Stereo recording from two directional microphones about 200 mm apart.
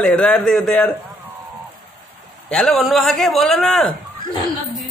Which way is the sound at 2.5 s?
Centre (ahead or behind).